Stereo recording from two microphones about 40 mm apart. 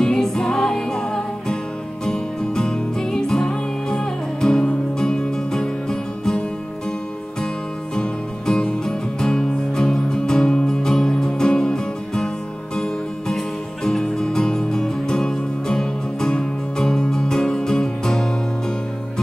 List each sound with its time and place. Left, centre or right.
0.0 s music: centre
7.9 s music: centre
13.8 s music: centre